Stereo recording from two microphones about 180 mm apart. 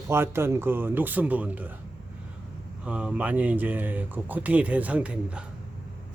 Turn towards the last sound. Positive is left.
turn(degrees=-5)  # may be behind; listen again after turning